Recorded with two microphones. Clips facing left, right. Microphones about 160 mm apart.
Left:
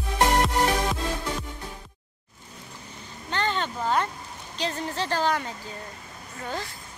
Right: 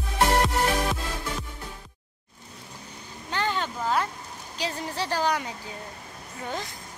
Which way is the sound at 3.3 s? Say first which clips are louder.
Left 1 dB; 10° right (ahead or behind).